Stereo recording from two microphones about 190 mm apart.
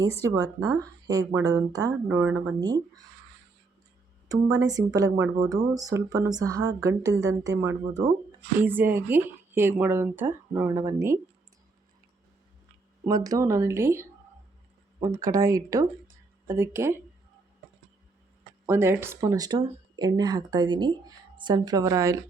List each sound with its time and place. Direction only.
0.2 s speech: 15° right (ahead or behind)
2.0 s speech: 10° right (ahead or behind)
2.6 s speech: 20° right (ahead or behind)
4.3 s speech: 20° right (ahead or behind)
13.1 s speech: 20° right (ahead or behind)
18.6 s speech: 10° right (ahead or behind)